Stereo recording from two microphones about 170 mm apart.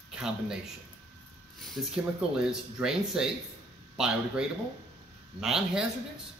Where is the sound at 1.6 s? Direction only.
Centre (ahead or behind).